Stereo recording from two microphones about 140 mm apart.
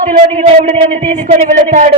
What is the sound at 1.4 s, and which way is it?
Speech, 65° right (ahead or behind).